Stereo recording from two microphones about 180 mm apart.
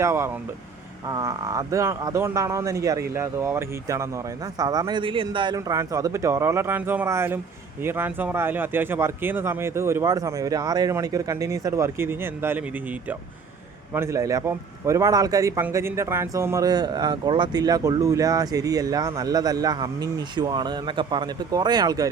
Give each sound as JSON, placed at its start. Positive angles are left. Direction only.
{"t": 0.0, "sound": "a man's voice", "side_deg": -15}